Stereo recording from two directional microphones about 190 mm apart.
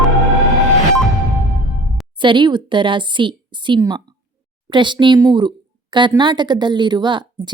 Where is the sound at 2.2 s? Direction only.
25° right (ahead or behind).